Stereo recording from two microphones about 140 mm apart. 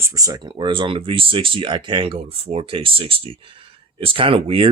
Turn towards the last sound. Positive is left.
turn(degrees=-40)  # may be behind; listen again after turning